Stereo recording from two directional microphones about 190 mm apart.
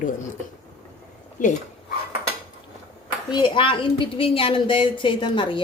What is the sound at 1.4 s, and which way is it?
Speech, 45° left (ahead or behind).